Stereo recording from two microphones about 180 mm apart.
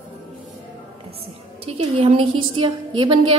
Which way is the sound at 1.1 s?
30° right (ahead or behind).